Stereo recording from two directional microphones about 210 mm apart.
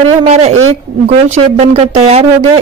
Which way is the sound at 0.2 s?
30° right (ahead or behind).